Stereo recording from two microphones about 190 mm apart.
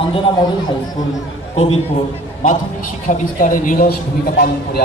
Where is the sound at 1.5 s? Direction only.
30° left (ahead or behind).